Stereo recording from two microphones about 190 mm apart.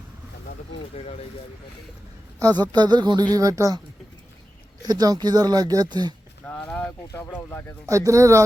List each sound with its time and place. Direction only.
2.6 s speech: 20° right (ahead or behind)
4.8 s speech: 20° right (ahead or behind)
6.4 s a sound: 5° left (ahead or behind)
7.9 s speech: 15° right (ahead or behind)